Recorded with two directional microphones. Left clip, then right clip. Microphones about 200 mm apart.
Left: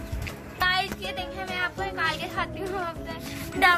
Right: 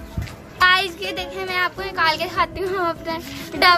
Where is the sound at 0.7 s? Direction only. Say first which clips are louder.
Right 6 dB; 50° right (ahead or behind).